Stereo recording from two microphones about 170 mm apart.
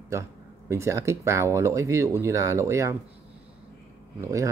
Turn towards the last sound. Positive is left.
turn(degrees=-20)  # may be behind; listen again after turning